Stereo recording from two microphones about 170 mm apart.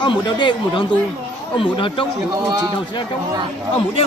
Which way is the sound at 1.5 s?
30° left (ahead or behind).